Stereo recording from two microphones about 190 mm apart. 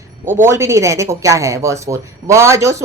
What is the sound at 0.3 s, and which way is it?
Speech, 15° right (ahead or behind).